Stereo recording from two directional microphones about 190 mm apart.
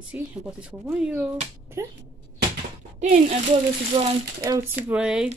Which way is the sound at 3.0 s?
35° right (ahead or behind).